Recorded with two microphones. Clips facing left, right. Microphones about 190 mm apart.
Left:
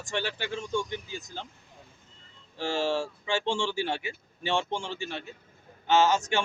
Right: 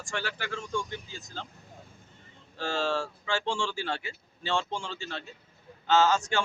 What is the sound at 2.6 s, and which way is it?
A man's voice, 15° left (ahead or behind).